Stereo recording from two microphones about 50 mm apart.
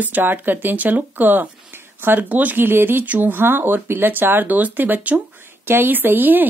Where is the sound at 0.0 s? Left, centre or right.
Right.